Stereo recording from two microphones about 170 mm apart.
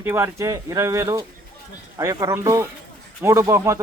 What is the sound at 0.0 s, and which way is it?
Speech, 15° right (ahead or behind).